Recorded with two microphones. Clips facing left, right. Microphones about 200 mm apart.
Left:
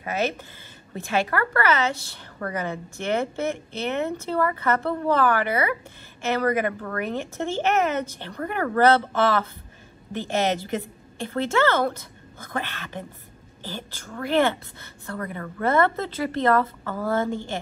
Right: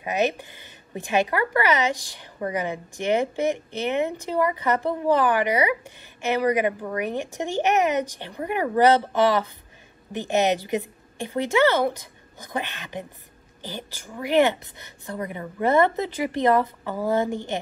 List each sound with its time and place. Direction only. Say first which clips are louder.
0.0 s a woman's voice: right 2 dB; 15° right (ahead or behind)